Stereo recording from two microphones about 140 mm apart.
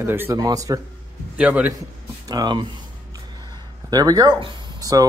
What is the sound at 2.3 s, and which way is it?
Speech, 30° right (ahead or behind).